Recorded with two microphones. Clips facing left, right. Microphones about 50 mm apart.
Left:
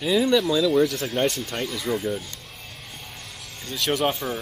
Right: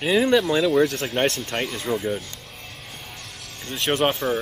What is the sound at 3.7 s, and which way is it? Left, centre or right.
Speech, right.